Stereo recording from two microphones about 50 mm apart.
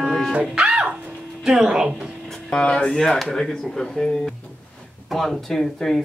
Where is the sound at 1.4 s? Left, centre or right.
Centre.